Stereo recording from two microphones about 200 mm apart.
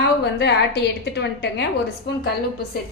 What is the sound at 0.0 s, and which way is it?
A woman's voice, 55° left (ahead or behind).